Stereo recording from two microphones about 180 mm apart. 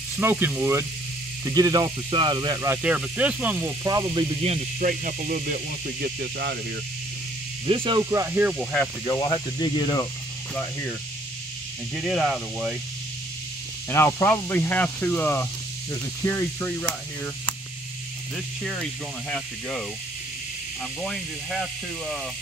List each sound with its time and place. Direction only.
0.2 s speech: 10° right (ahead or behind)
4.4 s speech: 35° right (ahead or behind)
4.8 s speech: 50° right (ahead or behind)
7.6 s speech: 30° right (ahead or behind); by 8.5 s 10° right (ahead or behind)
9.0 s speech: 15° left (ahead or behind)
10.5 s speech: 10° left (ahead or behind)
11.9 s speech: 5° right (ahead or behind)
13.8 s speech: 15° left (ahead or behind)
21.0 s speech: centre (ahead or behind)